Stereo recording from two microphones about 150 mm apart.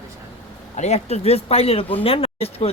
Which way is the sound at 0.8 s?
45° left (ahead or behind).